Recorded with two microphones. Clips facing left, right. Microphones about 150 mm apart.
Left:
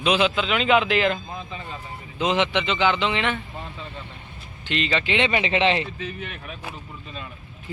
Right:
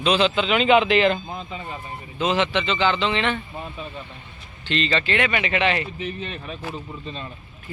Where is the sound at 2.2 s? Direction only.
15° left (ahead or behind).